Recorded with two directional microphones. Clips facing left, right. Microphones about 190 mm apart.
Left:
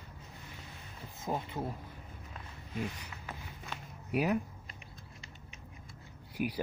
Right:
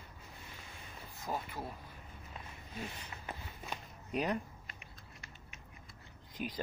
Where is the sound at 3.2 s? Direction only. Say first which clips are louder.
Right 1 dB; 20° right (ahead or behind).